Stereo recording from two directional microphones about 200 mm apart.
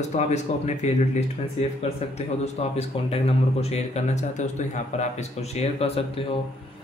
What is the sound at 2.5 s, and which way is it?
Speech, 30° left (ahead or behind).